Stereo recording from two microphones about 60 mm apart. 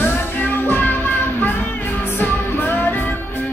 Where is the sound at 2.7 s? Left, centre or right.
Left.